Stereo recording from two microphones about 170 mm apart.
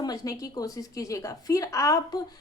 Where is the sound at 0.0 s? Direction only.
20° left (ahead or behind).